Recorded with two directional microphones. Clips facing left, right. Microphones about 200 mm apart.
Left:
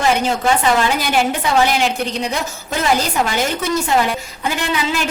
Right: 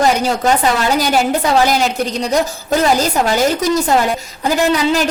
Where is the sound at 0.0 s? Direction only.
40° right (ahead or behind).